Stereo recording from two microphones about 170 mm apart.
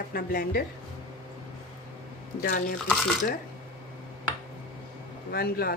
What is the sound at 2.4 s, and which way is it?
Speech, 60° left (ahead or behind).